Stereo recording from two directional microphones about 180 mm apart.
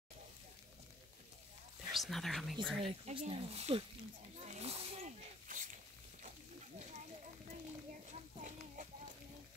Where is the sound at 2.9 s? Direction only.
30° right (ahead or behind).